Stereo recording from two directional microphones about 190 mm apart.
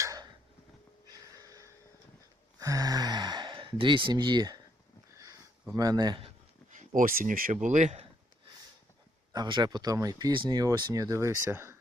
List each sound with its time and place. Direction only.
0.0 s a sound: 15° right (ahead or behind)
2.6 s sigh: 15° right (ahead or behind)
5.7 s speech: 20° right (ahead or behind)
6.7 s speech: 45° right (ahead or behind)
9.3 s speech: 20° right (ahead or behind)